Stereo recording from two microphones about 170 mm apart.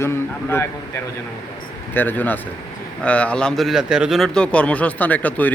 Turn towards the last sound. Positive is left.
turn(degrees=10)  # may be behind; listen again after turning